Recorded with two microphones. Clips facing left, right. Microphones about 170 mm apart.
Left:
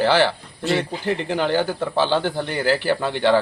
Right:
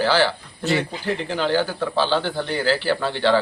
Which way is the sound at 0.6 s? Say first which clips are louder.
Left 1 dB; centre (ahead or behind).